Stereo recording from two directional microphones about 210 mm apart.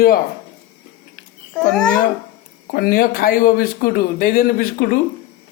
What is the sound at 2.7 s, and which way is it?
Speech, 45° left (ahead or behind).